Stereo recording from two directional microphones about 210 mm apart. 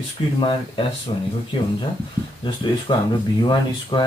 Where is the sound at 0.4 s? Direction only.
25° left (ahead or behind).